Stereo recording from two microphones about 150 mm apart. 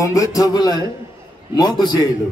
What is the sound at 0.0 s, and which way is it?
Speech, 20° left (ahead or behind).